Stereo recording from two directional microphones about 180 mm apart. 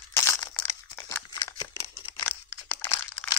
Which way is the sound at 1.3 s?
20° left (ahead or behind).